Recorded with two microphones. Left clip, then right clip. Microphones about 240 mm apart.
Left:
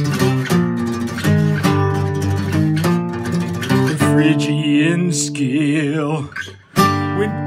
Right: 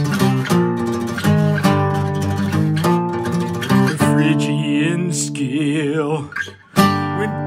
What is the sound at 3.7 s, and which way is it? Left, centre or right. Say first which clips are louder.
Music: left 1 dB; centre.